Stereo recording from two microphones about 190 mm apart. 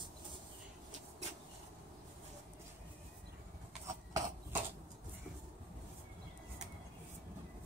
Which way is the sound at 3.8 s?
15° right (ahead or behind).